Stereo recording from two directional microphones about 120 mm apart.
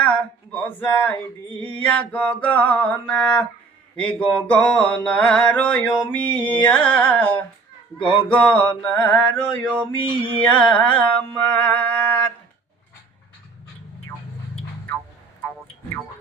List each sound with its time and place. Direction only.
0.0 s a sound: 10° left (ahead or behind)
1.7 s mantra: 10° left (ahead or behind)
9.9 s mantra: 45° left (ahead or behind)
10.4 s mantra: 10° left (ahead or behind)
11.5 s music: 10° left (ahead or behind)